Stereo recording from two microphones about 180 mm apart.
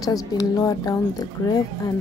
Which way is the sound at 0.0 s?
20° left (ahead or behind).